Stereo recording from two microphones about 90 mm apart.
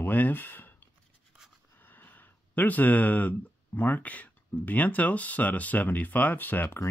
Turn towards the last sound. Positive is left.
turn(degrees=25)  # may be behind; listen again after turning